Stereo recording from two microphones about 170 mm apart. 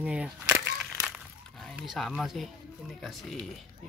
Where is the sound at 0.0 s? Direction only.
5° right (ahead or behind).